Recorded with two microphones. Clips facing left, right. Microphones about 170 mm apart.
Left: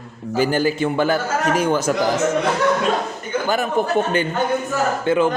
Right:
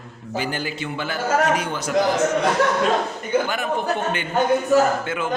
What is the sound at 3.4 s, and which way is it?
Speech, 40° left (ahead or behind).